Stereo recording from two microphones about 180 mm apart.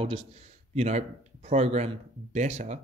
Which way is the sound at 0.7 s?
35° right (ahead or behind).